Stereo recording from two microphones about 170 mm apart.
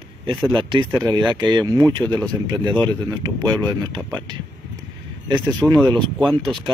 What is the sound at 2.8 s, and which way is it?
Speech, 25° right (ahead or behind).